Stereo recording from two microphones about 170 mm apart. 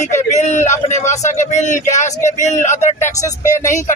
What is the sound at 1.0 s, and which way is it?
Speech, 45° left (ahead or behind).